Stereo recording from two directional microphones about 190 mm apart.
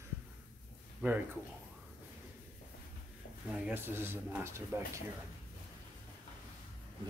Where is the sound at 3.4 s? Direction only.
5° right (ahead or behind).